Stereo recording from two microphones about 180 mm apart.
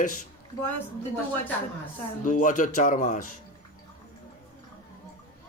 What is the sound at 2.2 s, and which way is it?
A man's voice, 45° left (ahead or behind).